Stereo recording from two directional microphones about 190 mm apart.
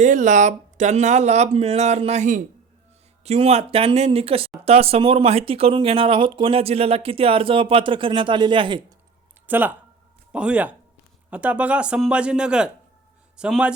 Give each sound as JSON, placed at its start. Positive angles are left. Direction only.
{"t": 0.0, "sound": "speech", "side_deg": -40}
{"t": 9.5, "sound": "a man's voice", "side_deg": -10}